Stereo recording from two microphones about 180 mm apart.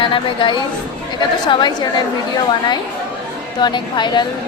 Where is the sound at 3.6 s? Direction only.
25° left (ahead or behind).